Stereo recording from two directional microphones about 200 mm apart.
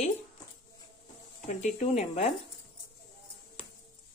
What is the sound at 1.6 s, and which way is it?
Speech, 35° left (ahead or behind).